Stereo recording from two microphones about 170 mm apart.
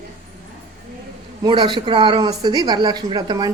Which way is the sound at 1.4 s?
25° right (ahead or behind).